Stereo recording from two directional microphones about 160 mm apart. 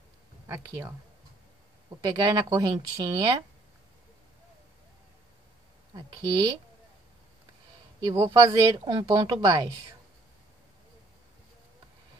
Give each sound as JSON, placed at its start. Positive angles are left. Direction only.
{"t": 0.5, "sound": "speech", "side_deg": -15}
{"t": 2.0, "sound": "speech", "side_deg": -25}
{"t": 5.9, "sound": "speech", "side_deg": -25}
{"t": 8.0, "sound": "speech", "side_deg": -20}